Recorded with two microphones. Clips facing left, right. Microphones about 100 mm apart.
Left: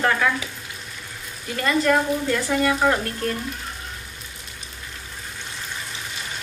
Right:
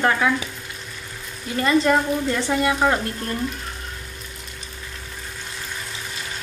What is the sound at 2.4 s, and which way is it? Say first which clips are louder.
Speech: right 1 dB; 20° right (ahead or behind).